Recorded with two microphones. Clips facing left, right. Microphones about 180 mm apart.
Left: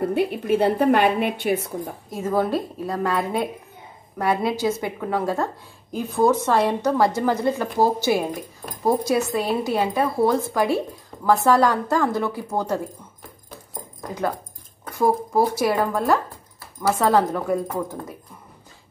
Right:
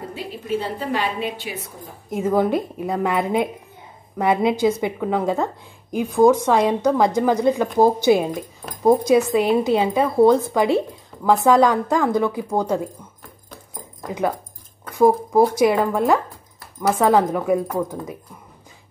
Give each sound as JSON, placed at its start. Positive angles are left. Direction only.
{"t": 0.0, "sound": "a woman's voice", "side_deg": 60}
{"t": 2.0, "sound": "a woman's voice", "side_deg": -20}
{"t": 15.0, "sound": "a woman's voice", "side_deg": -20}